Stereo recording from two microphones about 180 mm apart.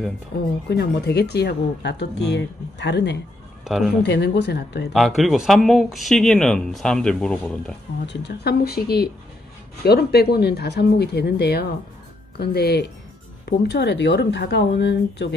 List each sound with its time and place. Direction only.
0.7 s speech: 65° left (ahead or behind)
3.6 s speech: centre (ahead or behind)
4.0 s speech: 70° left (ahead or behind)
4.9 s speech: centre (ahead or behind)
8.1 s speech: 70° left (ahead or behind)